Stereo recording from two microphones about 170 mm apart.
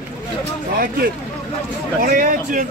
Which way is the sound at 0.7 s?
60° right (ahead or behind).